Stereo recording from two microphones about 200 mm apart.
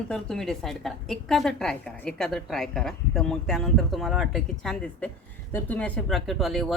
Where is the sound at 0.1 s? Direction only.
5° left (ahead or behind).